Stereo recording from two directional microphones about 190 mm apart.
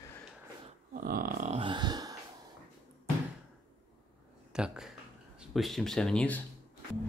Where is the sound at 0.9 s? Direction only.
50° right (ahead or behind).